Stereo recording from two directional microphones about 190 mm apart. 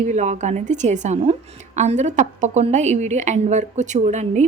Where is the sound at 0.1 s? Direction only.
40° right (ahead or behind).